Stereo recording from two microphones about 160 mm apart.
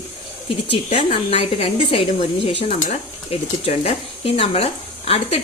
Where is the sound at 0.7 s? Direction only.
35° left (ahead or behind).